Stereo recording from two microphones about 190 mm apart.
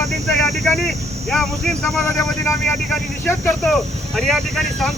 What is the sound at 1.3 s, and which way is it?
Speech, centre (ahead or behind).